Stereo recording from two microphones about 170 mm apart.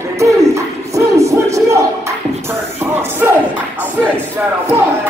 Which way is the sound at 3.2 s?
10° right (ahead or behind).